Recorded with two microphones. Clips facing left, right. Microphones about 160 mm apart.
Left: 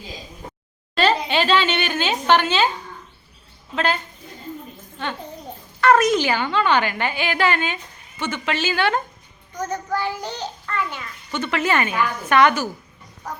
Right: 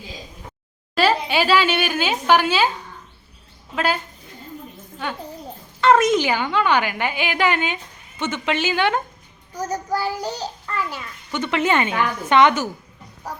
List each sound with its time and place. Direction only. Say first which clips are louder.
0.9 s speech: right 1 dB; 5° right (ahead or behind)
3.8 s a woman's voice: even; 5° right (ahead or behind)
5.8 s a woman's voice: right 1 dB; 20° right (ahead or behind)
9.6 s a child's voice: right 1 dB; 35° right (ahead or behind)
10.8 s a child's voice: right 1 dB; 5° right (ahead or behind)
11.3 s a woman's voice: right 1 dB; 20° right (ahead or behind)